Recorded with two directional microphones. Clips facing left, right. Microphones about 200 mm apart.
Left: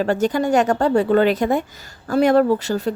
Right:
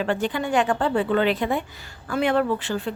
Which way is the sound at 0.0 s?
40° left (ahead or behind).